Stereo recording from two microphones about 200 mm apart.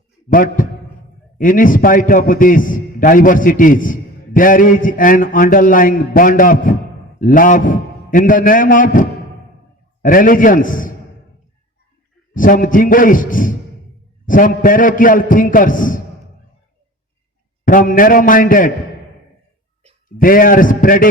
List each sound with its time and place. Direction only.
0.3 s a man's voice: 45° left (ahead or behind)
12.3 s a man's voice: 45° left (ahead or behind)
17.7 s a man's voice: 45° left (ahead or behind)
20.1 s a man's voice: 45° left (ahead or behind)